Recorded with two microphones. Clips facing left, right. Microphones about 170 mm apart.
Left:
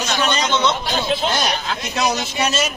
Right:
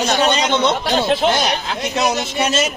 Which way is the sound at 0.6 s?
60° right (ahead or behind).